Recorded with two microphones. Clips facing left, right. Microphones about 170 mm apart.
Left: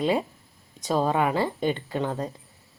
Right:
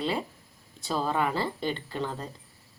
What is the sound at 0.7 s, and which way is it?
Speech, 45° left (ahead or behind).